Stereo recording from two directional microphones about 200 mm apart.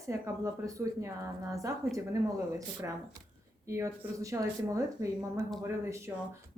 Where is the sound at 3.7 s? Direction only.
15° right (ahead or behind).